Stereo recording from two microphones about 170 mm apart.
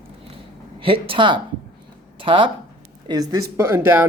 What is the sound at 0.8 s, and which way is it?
Speech, 30° right (ahead or behind).